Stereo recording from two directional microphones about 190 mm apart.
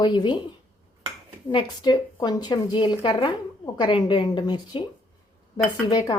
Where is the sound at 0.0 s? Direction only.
25° left (ahead or behind).